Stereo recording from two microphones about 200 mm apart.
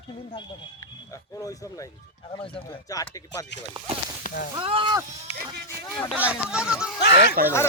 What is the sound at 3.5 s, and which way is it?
Speech, 60° left (ahead or behind).